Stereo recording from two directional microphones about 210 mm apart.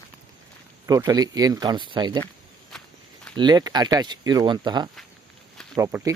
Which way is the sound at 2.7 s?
Centre (ahead or behind).